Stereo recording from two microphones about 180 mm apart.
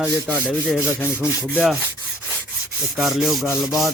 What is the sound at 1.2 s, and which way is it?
Rub, 10° left (ahead or behind).